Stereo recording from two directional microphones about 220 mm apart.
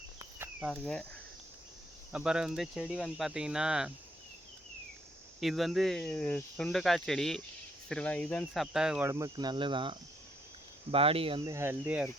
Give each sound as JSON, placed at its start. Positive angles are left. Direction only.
{"t": 0.2, "sound": "cricket", "side_deg": -10}
{"t": 0.7, "sound": "speech", "side_deg": 5}
{"t": 2.1, "sound": "speech", "side_deg": -5}
{"t": 5.4, "sound": "speech", "side_deg": 0}
{"t": 9.0, "sound": "speech", "side_deg": -15}